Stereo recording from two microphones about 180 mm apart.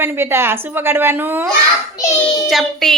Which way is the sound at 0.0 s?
15° right (ahead or behind).